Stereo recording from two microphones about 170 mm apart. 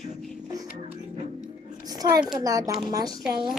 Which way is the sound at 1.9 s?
20° right (ahead or behind).